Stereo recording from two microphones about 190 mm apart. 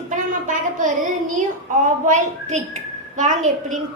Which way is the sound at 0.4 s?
40° right (ahead or behind).